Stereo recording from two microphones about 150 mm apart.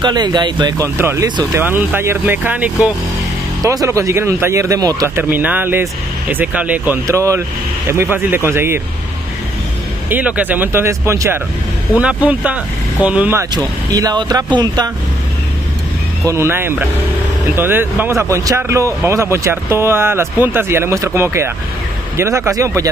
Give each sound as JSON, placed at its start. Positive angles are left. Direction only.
{"t": 0.0, "sound": "speech", "side_deg": -30}
{"t": 3.6, "sound": "speech", "side_deg": -20}
{"t": 10.0, "sound": "speech", "side_deg": -10}
{"t": 16.3, "sound": "speech", "side_deg": -15}